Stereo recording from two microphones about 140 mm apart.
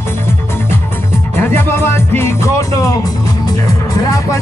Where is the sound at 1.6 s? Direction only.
15° left (ahead or behind).